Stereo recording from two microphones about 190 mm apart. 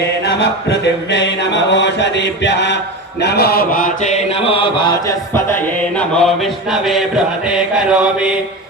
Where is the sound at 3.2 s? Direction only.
55° left (ahead or behind); by 5.0 s 25° left (ahead or behind).